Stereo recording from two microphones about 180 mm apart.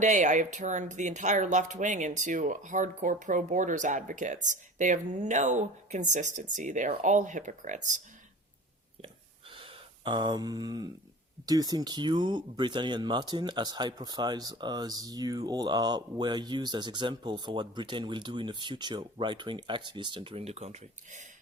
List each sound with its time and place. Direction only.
0.0 s speech: 40° right (ahead or behind)
9.6 s speech: 25° right (ahead or behind)